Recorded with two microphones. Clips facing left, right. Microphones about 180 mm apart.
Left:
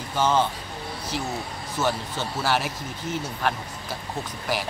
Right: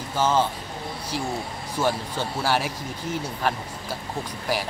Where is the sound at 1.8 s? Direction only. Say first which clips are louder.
Right 1 dB; 10° right (ahead or behind).